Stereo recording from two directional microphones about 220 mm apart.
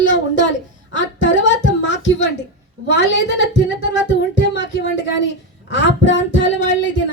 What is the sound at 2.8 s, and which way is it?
Speech, 55° left (ahead or behind).